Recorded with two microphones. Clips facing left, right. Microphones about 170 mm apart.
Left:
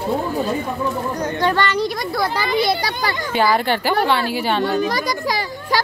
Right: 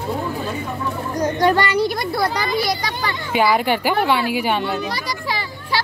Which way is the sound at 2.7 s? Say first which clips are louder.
Left 2 dB; 35° left (ahead or behind).